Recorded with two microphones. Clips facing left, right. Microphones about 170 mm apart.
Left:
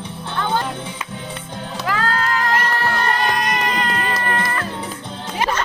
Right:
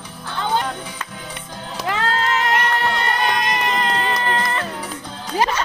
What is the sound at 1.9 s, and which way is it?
Music, 25° right (ahead or behind).